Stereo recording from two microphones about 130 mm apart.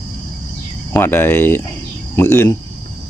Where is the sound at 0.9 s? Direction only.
15° left (ahead or behind).